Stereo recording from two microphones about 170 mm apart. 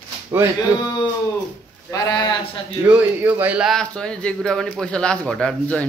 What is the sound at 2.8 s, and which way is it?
Speech, 10° right (ahead or behind).